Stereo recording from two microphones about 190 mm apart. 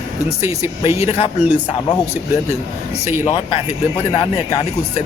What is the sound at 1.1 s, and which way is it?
Speech, 30° left (ahead or behind).